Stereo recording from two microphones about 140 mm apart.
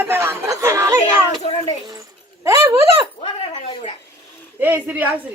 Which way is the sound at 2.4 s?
25° right (ahead or behind).